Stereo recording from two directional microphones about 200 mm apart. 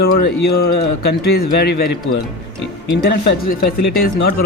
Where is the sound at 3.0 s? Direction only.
55° left (ahead or behind).